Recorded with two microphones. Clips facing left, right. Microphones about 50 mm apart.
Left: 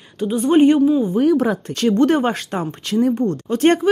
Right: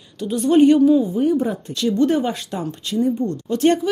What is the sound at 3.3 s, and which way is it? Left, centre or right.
Speech, left.